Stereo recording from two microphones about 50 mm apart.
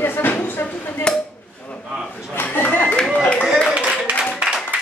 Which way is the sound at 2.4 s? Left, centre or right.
Left.